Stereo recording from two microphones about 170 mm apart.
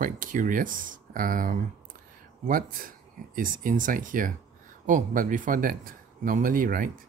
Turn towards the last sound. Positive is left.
turn(degrees=-55)  # may be behind; listen again after turning